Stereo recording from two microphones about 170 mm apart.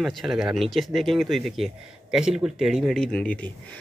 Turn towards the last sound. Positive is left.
turn(degrees=10)  # may be behind; listen again after turning